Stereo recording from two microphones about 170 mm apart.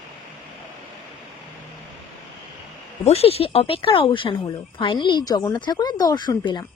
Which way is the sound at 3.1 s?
35° left (ahead or behind).